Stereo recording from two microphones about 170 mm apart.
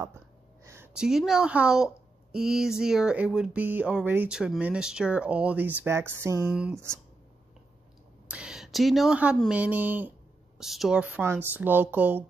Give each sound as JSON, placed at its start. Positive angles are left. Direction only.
{"t": 0.9, "sound": "speech", "side_deg": -5}
{"t": 8.3, "sound": "speech", "side_deg": -5}